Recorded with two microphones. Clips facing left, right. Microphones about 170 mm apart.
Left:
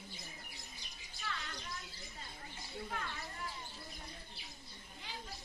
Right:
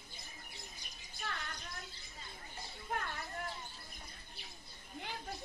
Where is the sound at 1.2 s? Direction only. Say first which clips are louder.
Right 1 dB; 55° right (ahead or behind).